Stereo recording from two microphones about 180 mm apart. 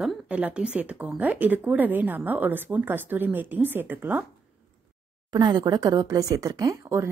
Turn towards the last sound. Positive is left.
turn(degrees=-15)  # may be behind; listen again after turning